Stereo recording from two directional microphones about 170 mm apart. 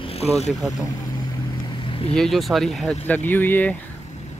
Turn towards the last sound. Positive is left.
turn(degrees=10)  # may be behind; listen again after turning